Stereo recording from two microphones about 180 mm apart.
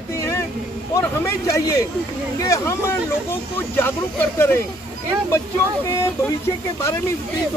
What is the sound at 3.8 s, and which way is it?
Speech, 15° left (ahead or behind).